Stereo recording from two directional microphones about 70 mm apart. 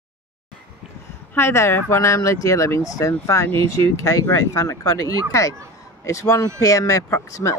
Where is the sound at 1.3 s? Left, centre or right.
Left.